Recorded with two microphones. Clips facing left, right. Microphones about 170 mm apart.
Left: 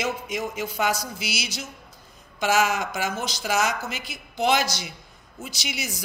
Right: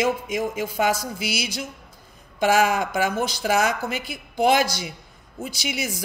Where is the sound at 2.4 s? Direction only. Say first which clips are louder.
Right 3 dB; 50° right (ahead or behind).